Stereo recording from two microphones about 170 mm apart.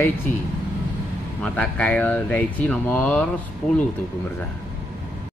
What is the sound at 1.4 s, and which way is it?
Speech, 10° left (ahead or behind).